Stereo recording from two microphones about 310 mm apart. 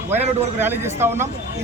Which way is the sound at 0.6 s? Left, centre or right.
Centre.